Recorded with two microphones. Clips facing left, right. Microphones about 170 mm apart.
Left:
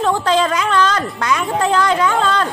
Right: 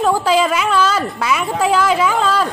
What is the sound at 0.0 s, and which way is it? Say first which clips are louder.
A woman's voice: right 1 dB; 5° right (ahead or behind).